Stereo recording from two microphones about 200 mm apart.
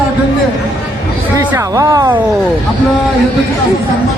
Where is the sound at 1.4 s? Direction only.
15° right (ahead or behind).